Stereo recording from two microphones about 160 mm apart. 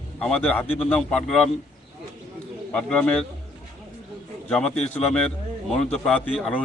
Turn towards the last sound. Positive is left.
turn(degrees=0)  # may be behind; listen again after turning